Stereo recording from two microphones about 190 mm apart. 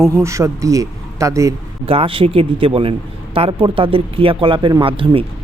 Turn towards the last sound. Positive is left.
turn(degrees=-30)  # may be behind; listen again after turning